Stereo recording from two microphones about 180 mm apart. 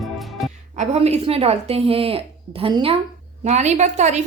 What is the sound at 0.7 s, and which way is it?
A woman's voice, 40° right (ahead or behind).